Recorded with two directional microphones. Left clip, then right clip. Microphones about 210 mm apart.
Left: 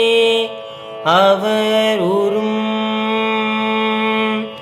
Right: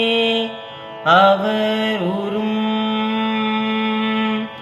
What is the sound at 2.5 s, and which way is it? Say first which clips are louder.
Music: left 2 dB; 55° left (ahead or behind).